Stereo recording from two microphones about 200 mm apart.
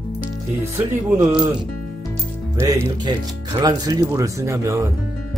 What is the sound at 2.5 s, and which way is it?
Speech, 15° right (ahead or behind).